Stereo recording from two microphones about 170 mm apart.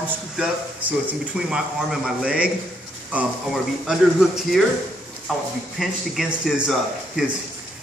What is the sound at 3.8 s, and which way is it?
Speech, centre (ahead or behind).